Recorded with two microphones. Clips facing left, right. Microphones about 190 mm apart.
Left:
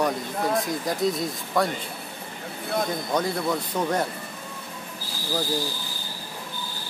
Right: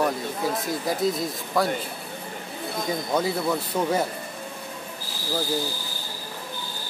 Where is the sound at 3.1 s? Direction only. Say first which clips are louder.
Even; 5° right (ahead or behind).